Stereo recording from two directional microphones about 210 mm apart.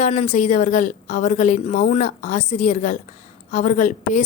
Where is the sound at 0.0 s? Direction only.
30° left (ahead or behind).